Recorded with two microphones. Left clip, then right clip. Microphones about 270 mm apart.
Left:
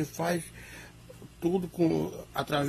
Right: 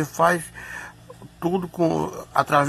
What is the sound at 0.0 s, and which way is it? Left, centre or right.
Speech, centre.